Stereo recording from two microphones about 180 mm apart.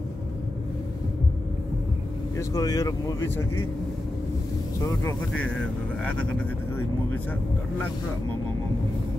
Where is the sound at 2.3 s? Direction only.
20° left (ahead or behind).